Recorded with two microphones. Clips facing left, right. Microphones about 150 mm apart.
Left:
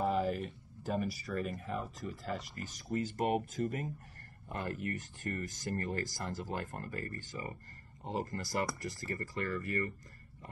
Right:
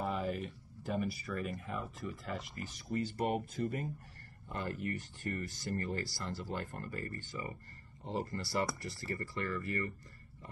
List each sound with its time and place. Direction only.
0.0 s speech: 40° left (ahead or behind)